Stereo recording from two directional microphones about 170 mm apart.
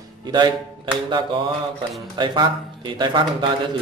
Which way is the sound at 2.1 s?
25° right (ahead or behind).